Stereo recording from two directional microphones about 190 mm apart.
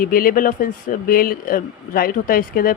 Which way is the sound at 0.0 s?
50° left (ahead or behind).